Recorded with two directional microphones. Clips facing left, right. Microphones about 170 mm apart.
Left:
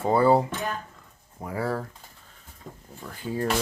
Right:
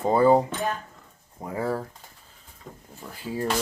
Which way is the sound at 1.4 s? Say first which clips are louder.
Right 1 dB; 20° right (ahead or behind).